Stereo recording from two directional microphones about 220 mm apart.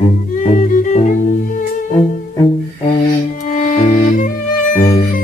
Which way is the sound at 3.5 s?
35° left (ahead or behind).